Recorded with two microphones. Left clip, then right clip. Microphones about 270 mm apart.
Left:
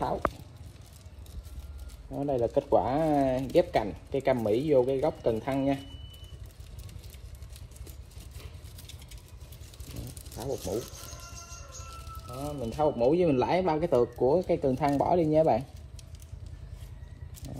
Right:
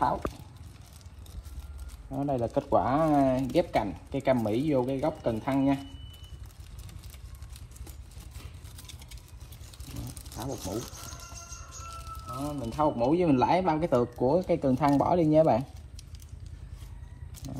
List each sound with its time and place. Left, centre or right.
2.1 s speech: right
10.3 s a sound: right
12.4 s speech: right